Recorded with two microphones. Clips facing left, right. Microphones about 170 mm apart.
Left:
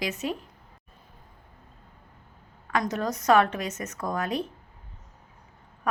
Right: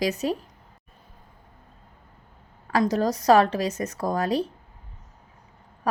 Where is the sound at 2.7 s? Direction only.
35° right (ahead or behind).